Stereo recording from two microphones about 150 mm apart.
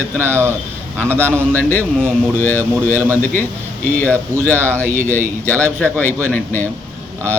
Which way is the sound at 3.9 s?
10° left (ahead or behind).